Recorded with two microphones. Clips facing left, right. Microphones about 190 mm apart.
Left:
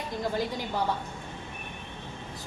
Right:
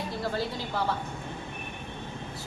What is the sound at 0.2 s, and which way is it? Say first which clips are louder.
Speech: left 3 dB; 15° left (ahead or behind).